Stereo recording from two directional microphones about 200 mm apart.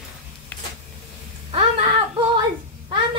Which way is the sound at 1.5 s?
25° right (ahead or behind).